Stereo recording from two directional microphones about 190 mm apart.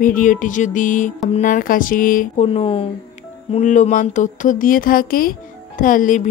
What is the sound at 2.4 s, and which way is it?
Speech, 30° left (ahead or behind).